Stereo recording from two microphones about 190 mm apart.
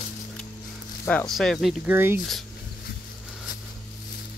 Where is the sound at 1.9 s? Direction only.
10° right (ahead or behind).